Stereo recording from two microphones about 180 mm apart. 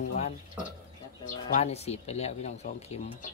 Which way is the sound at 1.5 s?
35° left (ahead or behind).